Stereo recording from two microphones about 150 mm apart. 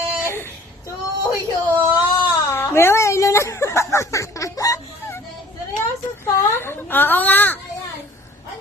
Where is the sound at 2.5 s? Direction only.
15° left (ahead or behind).